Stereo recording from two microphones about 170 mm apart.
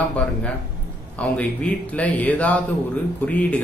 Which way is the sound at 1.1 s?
10° left (ahead or behind).